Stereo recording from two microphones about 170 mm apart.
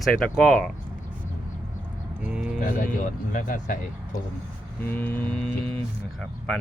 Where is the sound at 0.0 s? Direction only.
5° left (ahead or behind).